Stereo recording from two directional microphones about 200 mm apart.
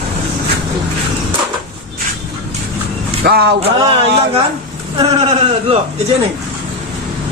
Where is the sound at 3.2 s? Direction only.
55° right (ahead or behind).